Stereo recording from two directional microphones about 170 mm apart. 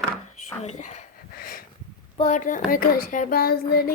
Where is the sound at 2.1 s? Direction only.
45° left (ahead or behind); by 3.9 s 65° left (ahead or behind).